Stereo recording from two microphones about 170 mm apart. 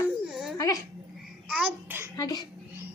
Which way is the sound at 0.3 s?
5° right (ahead or behind).